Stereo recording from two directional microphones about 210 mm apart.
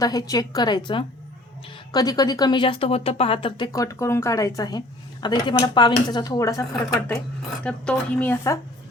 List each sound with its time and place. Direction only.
0.0 s speech: 15° left (ahead or behind)
7.6 s speech: 5° left (ahead or behind)